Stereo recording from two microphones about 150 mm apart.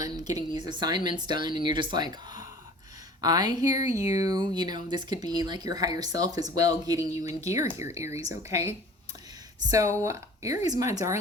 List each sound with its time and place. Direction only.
0.0 s speech: 25° right (ahead or behind)